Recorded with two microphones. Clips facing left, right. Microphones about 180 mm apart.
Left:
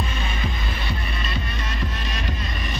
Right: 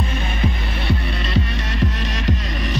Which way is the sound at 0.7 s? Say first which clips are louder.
Right 6 dB; 70° right (ahead or behind).